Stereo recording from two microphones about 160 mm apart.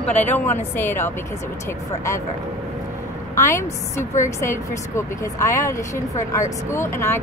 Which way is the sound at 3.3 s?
15° left (ahead or behind).